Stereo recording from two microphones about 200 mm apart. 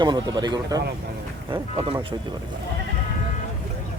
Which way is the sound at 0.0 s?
20° right (ahead or behind).